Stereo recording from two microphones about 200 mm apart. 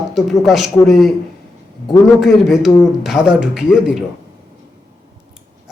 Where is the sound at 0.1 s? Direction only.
Centre (ahead or behind).